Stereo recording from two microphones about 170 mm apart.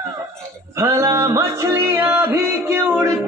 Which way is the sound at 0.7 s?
20° right (ahead or behind).